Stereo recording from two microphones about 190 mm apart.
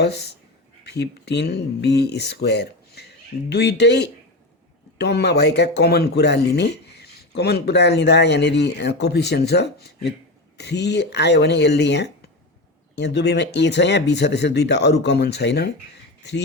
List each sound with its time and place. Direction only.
0.9 s speech: 60° left (ahead or behind)